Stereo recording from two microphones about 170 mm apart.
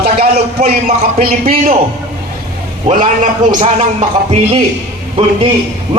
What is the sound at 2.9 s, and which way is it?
Speech, 50° right (ahead or behind).